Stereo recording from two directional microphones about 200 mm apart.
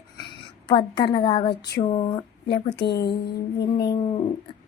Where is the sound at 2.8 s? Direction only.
55° left (ahead or behind).